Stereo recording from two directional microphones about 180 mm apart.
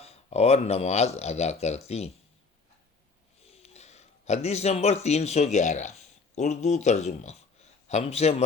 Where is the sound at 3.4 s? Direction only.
35° left (ahead or behind).